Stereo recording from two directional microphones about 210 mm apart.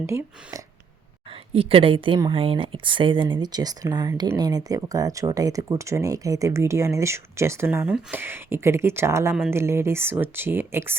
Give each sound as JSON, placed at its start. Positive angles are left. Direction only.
{"t": 0.0, "sound": "speech", "side_deg": -15}
{"t": 1.3, "sound": "speech", "side_deg": -25}